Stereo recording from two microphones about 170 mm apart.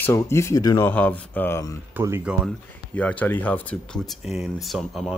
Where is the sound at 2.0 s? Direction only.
15° right (ahead or behind).